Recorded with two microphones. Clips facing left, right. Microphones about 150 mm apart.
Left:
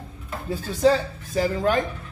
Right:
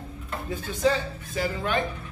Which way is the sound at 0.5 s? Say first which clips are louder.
Left 5 dB; 35° left (ahead or behind).